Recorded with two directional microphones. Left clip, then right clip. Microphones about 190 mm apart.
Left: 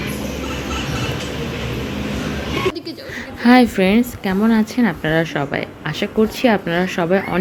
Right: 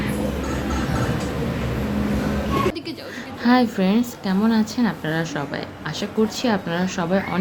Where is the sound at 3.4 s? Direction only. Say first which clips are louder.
Left 6 dB; 20° left (ahead or behind).